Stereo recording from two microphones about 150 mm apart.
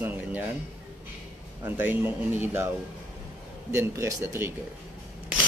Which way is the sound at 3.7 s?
20° right (ahead or behind).